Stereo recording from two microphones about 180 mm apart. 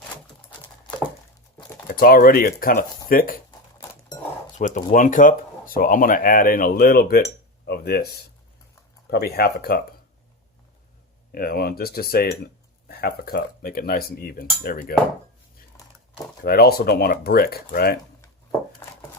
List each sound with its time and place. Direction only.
1.9 s speech: 55° left (ahead or behind)
4.5 s speech: 45° left (ahead or behind)
7.7 s cutlery: 60° left (ahead or behind)
11.3 s cutlery: 55° left (ahead or behind)
16.4 s cutlery: 60° left (ahead or behind)